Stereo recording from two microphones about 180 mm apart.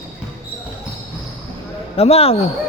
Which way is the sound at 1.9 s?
35° left (ahead or behind).